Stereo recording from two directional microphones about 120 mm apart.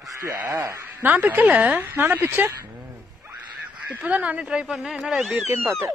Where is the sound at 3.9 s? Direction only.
10° right (ahead or behind).